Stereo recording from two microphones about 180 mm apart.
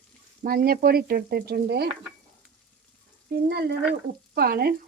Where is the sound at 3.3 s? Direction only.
65° right (ahead or behind).